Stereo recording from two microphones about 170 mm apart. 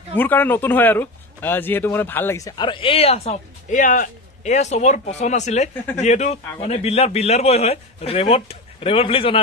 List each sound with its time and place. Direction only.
0.1 s a man's voice: 10° left (ahead or behind); by 9.4 s 35° left (ahead or behind)